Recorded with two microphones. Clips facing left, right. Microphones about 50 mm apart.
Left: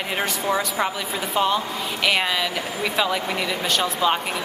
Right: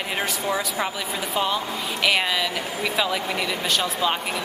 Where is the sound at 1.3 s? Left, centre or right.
Centre.